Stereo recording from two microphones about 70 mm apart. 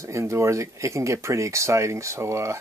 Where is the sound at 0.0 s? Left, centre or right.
Right.